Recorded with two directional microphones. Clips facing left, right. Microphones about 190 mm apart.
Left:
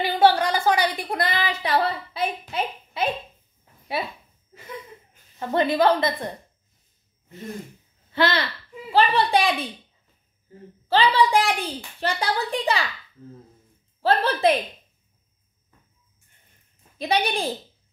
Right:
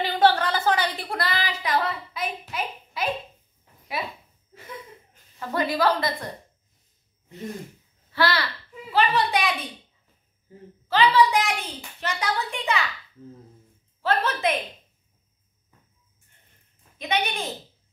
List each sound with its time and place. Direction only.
0.0 s a sound: 10° left (ahead or behind); by 3.1 s 25° left (ahead or behind)
5.4 s a woman's voice: 25° left (ahead or behind)
8.1 s a child's voice: 20° left (ahead or behind)
10.9 s a child's voice: 30° left (ahead or behind)
14.0 s a child's voice: 30° left (ahead or behind)
17.0 s a child's voice: 35° left (ahead or behind)